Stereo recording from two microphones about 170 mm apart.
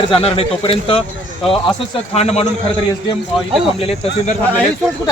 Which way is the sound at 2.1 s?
40° left (ahead or behind).